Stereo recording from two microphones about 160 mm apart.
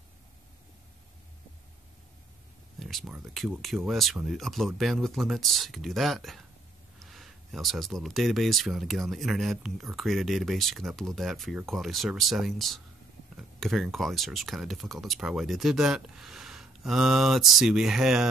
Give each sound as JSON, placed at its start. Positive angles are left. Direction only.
{"t": 2.8, "sound": "speech", "side_deg": 0}